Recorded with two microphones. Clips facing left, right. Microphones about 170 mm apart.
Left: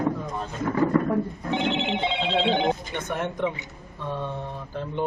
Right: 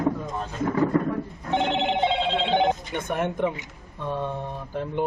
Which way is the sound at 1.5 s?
50° right (ahead or behind).